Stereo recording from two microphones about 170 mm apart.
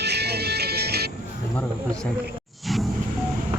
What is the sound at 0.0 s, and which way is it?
Music, 75° right (ahead or behind).